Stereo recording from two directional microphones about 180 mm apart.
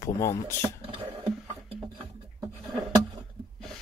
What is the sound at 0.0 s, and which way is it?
Speech, 15° left (ahead or behind).